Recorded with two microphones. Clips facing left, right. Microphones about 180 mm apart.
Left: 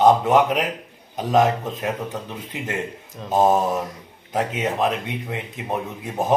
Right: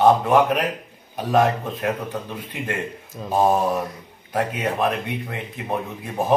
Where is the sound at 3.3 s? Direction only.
20° left (ahead or behind).